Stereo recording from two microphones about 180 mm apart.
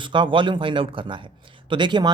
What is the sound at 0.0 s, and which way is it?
Speech, 25° right (ahead or behind).